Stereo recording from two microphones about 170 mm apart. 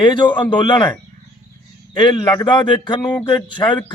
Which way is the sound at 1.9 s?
25° left (ahead or behind).